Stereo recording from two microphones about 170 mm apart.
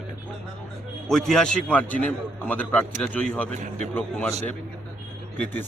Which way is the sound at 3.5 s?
45° right (ahead or behind).